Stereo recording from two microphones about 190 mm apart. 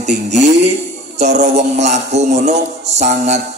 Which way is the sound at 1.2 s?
35° right (ahead or behind).